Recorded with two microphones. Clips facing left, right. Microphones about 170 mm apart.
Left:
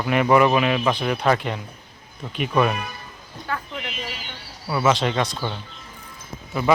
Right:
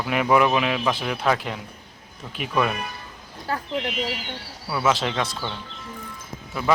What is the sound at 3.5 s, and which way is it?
Speech, 35° right (ahead or behind).